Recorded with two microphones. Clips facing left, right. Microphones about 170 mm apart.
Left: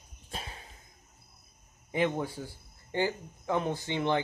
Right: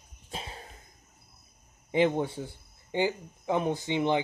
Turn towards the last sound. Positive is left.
turn(degrees=-15)  # may be behind; listen again after turning